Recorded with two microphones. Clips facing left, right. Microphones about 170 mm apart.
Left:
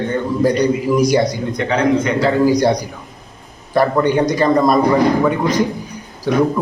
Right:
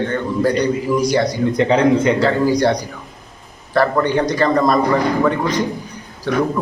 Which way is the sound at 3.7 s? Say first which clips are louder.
Left 2 dB; 15° left (ahead or behind).